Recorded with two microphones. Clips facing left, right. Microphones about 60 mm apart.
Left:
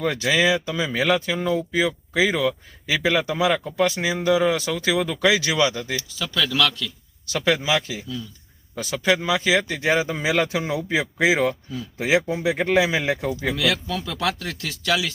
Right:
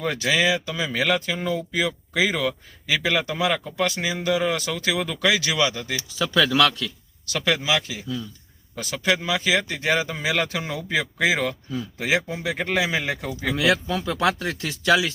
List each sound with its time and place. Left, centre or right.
0.2 s speech: left
6.0 s speech: centre
7.3 s speech: left
13.6 s speech: right